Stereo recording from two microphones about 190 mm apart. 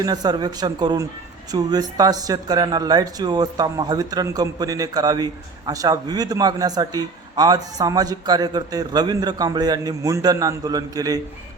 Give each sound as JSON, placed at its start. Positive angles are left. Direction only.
{"t": 0.0, "sound": "speech", "side_deg": -20}